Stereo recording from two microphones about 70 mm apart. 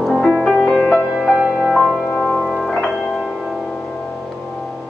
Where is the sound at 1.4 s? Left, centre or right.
Centre.